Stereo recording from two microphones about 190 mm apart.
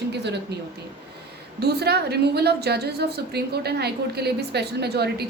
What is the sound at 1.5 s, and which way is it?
A woman's voice, 60° right (ahead or behind).